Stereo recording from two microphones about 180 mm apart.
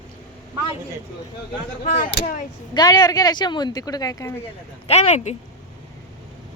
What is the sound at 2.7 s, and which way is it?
A woman's voice, 25° left (ahead or behind).